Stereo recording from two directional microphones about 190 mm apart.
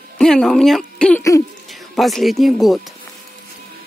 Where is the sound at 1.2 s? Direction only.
15° left (ahead or behind).